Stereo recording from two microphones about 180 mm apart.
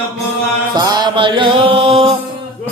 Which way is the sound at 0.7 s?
25° right (ahead or behind).